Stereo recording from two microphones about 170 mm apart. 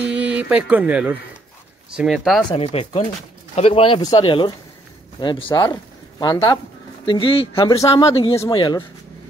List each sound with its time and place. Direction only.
0.0 s speech: 5° right (ahead or behind)
2.5 s speech: 35° left (ahead or behind)